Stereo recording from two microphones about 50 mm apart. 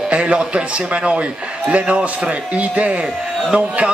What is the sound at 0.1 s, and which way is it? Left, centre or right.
Speech, right.